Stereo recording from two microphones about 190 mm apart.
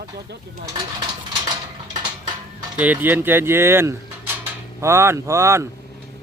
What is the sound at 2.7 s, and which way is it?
Speech, 10° right (ahead or behind).